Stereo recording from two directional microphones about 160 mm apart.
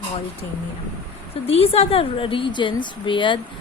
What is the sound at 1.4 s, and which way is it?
A woman's voice, 40° left (ahead or behind).